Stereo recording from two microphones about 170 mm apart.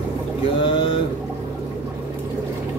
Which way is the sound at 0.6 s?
30° left (ahead or behind).